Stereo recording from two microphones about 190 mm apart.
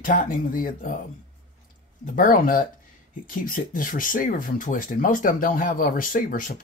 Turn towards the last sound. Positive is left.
turn(degrees=45)  # may be behind; listen again after turning